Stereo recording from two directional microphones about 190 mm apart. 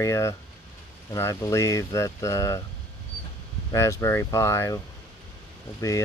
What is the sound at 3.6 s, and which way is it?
Speech, 15° left (ahead or behind).